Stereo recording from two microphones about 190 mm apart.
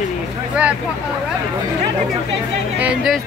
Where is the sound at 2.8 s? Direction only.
5° right (ahead or behind).